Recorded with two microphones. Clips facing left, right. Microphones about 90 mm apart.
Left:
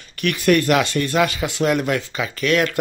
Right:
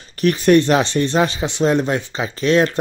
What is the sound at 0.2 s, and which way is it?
Speech, 30° right (ahead or behind).